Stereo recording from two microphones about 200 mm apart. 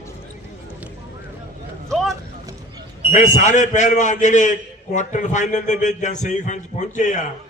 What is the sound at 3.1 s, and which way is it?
A man's voice, 35° left (ahead or behind).